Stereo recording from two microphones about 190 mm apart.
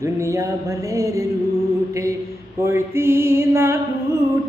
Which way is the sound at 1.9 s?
15° right (ahead or behind).